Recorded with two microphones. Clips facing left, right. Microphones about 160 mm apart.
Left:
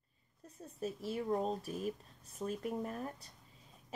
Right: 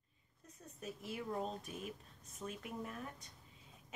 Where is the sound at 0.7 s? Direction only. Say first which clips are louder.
Left 7 dB; 35° left (ahead or behind).